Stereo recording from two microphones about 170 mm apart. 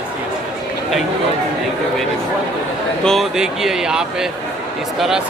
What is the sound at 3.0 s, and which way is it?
Speech, centre (ahead or behind).